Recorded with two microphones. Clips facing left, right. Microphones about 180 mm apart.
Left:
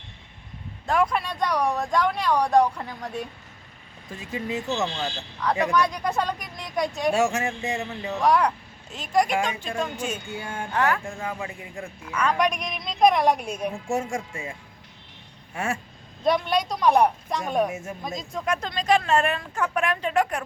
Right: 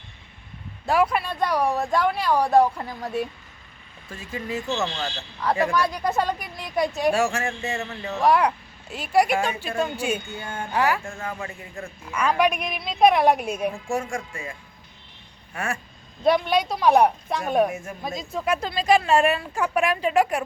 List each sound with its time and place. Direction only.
0.9 s speech: 5° right (ahead or behind)
4.1 s speech: 15° left (ahead or behind)
5.7 s speech: centre (ahead or behind)
7.1 s speech: 20° left (ahead or behind)
8.1 s speech: 5° right (ahead or behind)
10.2 s speech: 10° left (ahead or behind)
10.7 s speech: 10° right (ahead or behind)
11.0 s speech: 15° left (ahead or behind)
12.1 s speech: 10° right (ahead or behind)
13.9 s speech: 25° left (ahead or behind)
15.5 s speech: 25° left (ahead or behind)
16.2 s speech: 5° right (ahead or behind)
17.7 s speech: 25° left (ahead or behind)
18.0 s speech: 5° right (ahead or behind)